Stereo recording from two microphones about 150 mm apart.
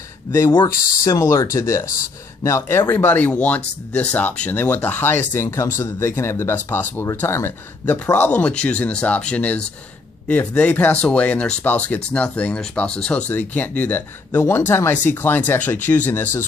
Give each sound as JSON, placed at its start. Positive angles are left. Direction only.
{"t": 1.0, "sound": "speech", "side_deg": 20}